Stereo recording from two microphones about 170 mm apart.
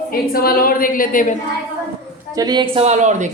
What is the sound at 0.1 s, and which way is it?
A woman's voice, 60° left (ahead or behind).